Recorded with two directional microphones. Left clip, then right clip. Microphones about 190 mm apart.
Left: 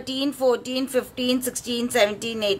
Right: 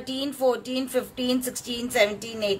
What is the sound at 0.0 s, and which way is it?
A woman's voice, 20° left (ahead or behind).